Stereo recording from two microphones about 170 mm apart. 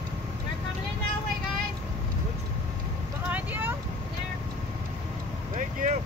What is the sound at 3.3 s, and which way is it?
Vehicle, 10° right (ahead or behind).